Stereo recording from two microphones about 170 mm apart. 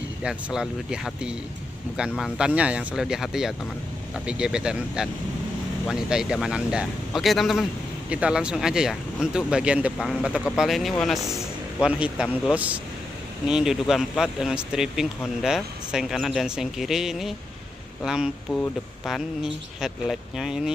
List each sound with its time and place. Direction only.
0.2 s a man's voice: 5° right (ahead or behind)